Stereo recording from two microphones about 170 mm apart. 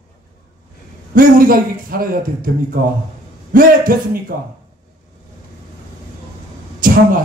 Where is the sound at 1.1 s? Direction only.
55° right (ahead or behind).